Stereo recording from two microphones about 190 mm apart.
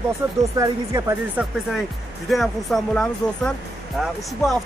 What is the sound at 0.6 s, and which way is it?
Speech, 15° right (ahead or behind).